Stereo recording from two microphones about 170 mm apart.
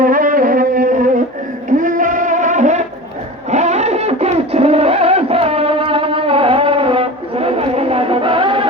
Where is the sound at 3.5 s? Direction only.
40° right (ahead or behind).